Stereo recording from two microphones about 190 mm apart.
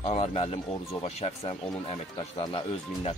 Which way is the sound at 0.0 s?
35° left (ahead or behind).